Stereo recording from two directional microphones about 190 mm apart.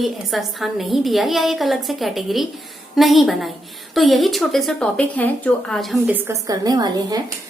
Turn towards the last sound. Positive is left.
turn(degrees=-20)  # may be behind; listen again after turning